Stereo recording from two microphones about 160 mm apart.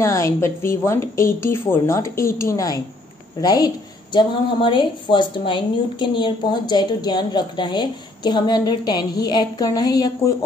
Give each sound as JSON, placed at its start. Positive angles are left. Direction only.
{"t": 0.0, "sound": "a woman's voice", "side_deg": 15}